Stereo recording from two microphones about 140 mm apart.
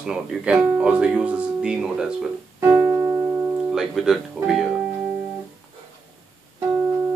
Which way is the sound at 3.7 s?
5° right (ahead or behind).